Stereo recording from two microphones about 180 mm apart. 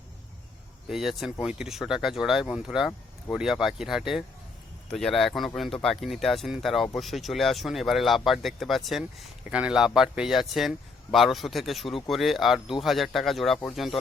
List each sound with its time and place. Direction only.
0.9 s speech: centre (ahead or behind)